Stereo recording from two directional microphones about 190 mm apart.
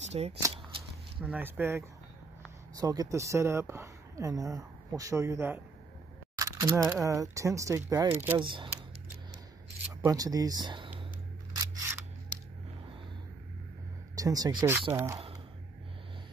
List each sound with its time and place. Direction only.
0.0 s shuffling cards: 35° right (ahead or behind)
1.2 s speech: 10° right (ahead or behind)
6.3 s single-lens reflex camera: 20° right (ahead or behind)
6.9 s speech: 15° right (ahead or behind)
8.4 s speech: 25° right (ahead or behind)
10.0 s speech: 20° right (ahead or behind)
11.5 s scissors: 20° right (ahead or behind)
14.1 s speech: 20° right (ahead or behind)